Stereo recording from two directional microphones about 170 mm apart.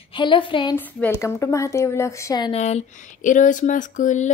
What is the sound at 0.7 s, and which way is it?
A woman's voice, 10° left (ahead or behind).